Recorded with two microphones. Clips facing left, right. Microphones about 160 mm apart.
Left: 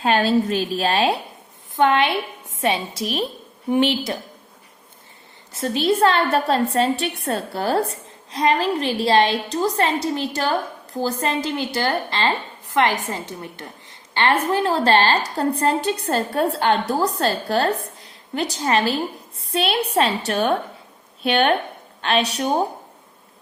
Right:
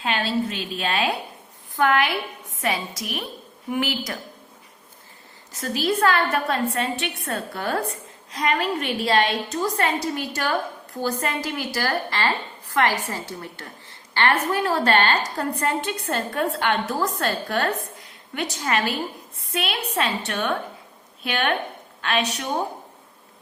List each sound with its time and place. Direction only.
0.0 s a woman's voice: 40° left (ahead or behind)
1.7 s a woman's voice: 25° left (ahead or behind)
5.5 s a woman's voice: 25° left (ahead or behind)